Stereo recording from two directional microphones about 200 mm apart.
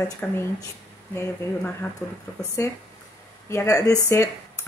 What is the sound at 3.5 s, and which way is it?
A woman's voice, 15° left (ahead or behind).